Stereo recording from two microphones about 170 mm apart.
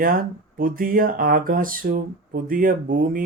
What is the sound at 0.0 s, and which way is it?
Speech, 55° right (ahead or behind).